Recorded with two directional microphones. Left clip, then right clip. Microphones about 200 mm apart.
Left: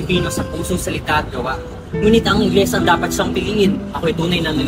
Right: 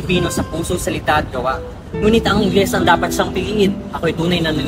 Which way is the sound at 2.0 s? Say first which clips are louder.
Even; centre (ahead or behind).